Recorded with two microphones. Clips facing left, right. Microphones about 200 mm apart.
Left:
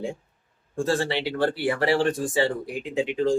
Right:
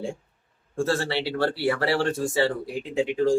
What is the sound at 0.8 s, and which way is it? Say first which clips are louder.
Speech: left 1 dB; 15° left (ahead or behind).